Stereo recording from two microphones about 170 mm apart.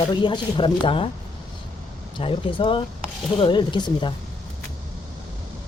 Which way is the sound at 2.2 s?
30° left (ahead or behind).